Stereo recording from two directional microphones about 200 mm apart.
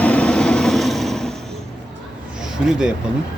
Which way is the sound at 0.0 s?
5° left (ahead or behind).